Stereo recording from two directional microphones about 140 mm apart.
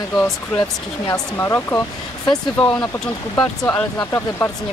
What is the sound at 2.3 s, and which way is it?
Speech, 5° left (ahead or behind).